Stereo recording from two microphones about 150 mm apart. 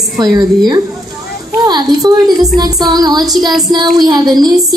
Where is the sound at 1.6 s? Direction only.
30° right (ahead or behind).